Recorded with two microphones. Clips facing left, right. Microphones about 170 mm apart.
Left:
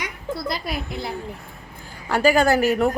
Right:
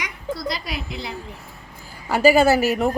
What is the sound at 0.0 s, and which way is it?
A woman's voice, 50° left (ahead or behind).